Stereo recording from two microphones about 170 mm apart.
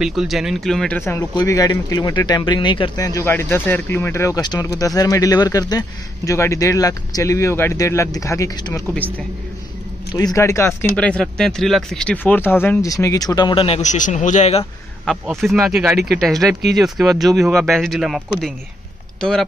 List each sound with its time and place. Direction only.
0.0 s speech: centre (ahead or behind); by 8.8 s 20° left (ahead or behind)
10.1 s speech: 20° left (ahead or behind)
10.8 s speech: 5° left (ahead or behind); by 14.7 s 40° left (ahead or behind)
15.0 s speech: centre (ahead or behind)